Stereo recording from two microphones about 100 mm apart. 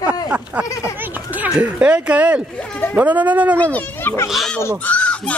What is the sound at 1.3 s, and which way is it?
Speech, 15° right (ahead or behind).